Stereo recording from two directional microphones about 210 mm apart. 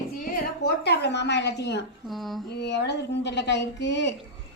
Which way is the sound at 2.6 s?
55° left (ahead or behind).